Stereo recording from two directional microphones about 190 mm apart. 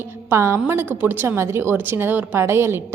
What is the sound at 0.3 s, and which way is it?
A woman's voice, 15° right (ahead or behind).